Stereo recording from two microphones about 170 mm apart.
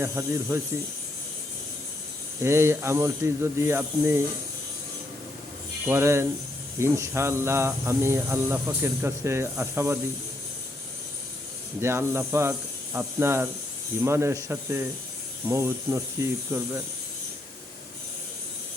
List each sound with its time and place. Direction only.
0.0 s speech: 15° right (ahead or behind)
2.4 s speech: 15° right (ahead or behind)
5.8 s speech: 15° right (ahead or behind)
11.8 s speech: 15° right (ahead or behind)